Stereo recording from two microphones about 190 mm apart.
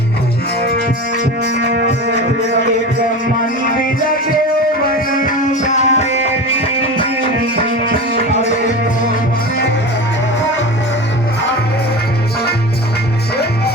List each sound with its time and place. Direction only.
1.5 s music: 60° right (ahead or behind)
5.2 s music: 40° left (ahead or behind)
7.5 s music: 55° right (ahead or behind)
13.3 s music: 55° left (ahead or behind)